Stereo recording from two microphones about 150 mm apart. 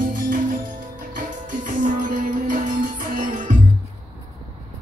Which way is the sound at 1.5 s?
60° right (ahead or behind).